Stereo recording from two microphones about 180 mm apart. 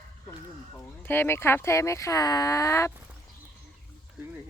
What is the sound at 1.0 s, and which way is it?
Speech, 10° left (ahead or behind).